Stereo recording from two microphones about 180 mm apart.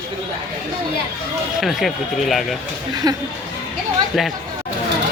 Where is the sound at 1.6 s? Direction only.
Centre (ahead or behind).